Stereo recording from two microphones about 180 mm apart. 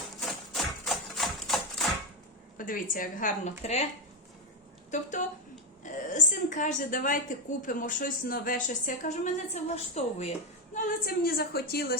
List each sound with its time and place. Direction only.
0.2 s a sound: centre (ahead or behind)
2.6 s a woman's voice: 50° left (ahead or behind)
4.9 s a woman's voice: 45° left (ahead or behind)
10.8 s a woman's voice: 50° left (ahead or behind)